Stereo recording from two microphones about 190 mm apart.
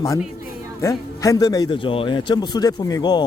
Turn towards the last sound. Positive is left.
turn(degrees=20)  # may be behind; listen again after turning